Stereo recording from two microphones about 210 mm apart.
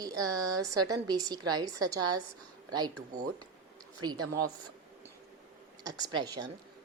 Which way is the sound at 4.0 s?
20° right (ahead or behind).